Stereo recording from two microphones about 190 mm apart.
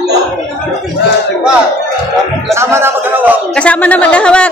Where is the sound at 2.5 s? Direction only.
15° right (ahead or behind).